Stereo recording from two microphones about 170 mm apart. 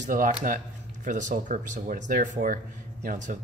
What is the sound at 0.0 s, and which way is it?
Speech, 50° right (ahead or behind).